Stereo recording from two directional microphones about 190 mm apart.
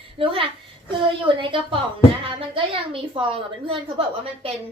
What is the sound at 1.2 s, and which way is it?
A woman's voice, 25° right (ahead or behind).